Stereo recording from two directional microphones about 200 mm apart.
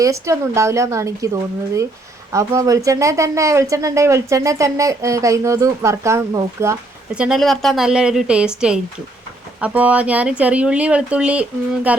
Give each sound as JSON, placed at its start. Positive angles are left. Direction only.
{"t": 0.0, "sound": "speech", "side_deg": -15}
{"t": 7.2, "sound": "speech", "side_deg": 0}